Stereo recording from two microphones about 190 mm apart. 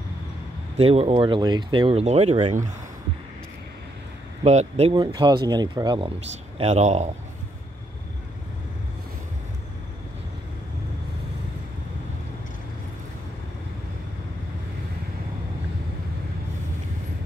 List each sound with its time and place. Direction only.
0.7 s speech: 30° right (ahead or behind)
4.5 s speech: 35° right (ahead or behind)
6.6 s speech: 35° right (ahead or behind)